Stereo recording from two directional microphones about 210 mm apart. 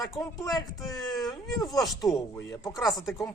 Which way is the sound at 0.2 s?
15° left (ahead or behind).